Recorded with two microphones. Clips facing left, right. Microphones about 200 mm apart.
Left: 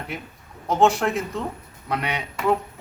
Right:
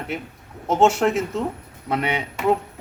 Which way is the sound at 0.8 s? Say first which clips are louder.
Right 2 dB; 25° right (ahead or behind).